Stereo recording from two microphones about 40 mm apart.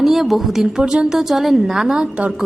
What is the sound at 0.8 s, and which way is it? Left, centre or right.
Speech, right.